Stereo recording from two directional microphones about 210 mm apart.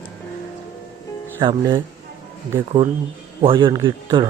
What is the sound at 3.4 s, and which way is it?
Speech, 25° right (ahead or behind).